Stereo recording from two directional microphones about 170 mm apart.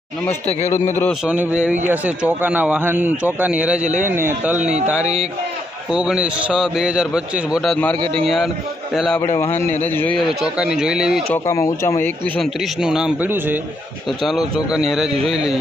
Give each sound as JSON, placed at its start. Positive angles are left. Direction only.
{"t": 1.2, "sound": "a man's voice", "side_deg": -10}
{"t": 9.0, "sound": "a man's voice", "side_deg": 0}
{"t": 9.5, "sound": "a man's voice", "side_deg": 40}
{"t": 9.8, "sound": "speech", "side_deg": 10}
{"t": 10.2, "sound": "a man's voice", "side_deg": -5}
{"t": 11.3, "sound": "speech", "side_deg": 15}
{"t": 12.4, "sound": "a man's voice", "side_deg": -5}
{"t": 14.2, "sound": "a man's voice", "side_deg": 0}